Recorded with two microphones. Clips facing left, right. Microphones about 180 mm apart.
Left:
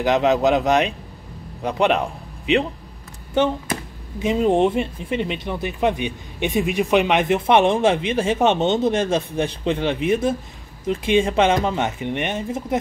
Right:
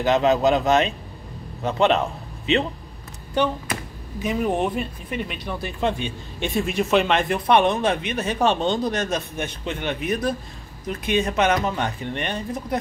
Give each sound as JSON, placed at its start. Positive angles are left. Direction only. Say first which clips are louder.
{"t": 0.0, "sound": "a man's voice", "louder": "left 1 dB", "side_deg": 15}
{"t": 4.2, "sound": "speech", "louder": "left 5 dB", "side_deg": 25}